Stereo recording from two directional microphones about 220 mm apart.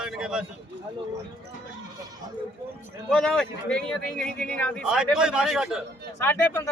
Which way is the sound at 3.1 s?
5° left (ahead or behind).